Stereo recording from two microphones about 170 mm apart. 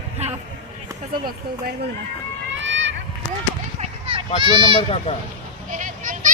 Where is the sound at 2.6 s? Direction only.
90° right.